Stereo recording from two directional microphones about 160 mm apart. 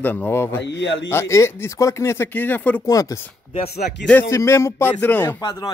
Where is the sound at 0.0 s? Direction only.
10° left (ahead or behind).